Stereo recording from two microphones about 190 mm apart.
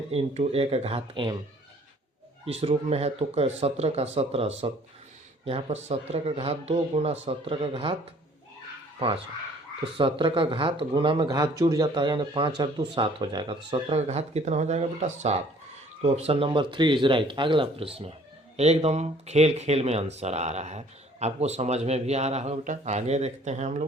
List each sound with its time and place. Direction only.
0.1 s speech: 30° right (ahead or behind)
2.5 s speech: 30° right (ahead or behind)
9.0 s speech: 30° right (ahead or behind)